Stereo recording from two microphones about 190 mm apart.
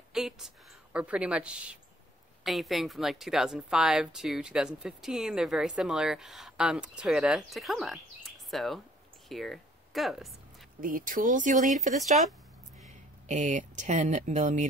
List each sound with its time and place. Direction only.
0.1 s a woman's voice: centre (ahead or behind)
10.8 s speech: 45° right (ahead or behind)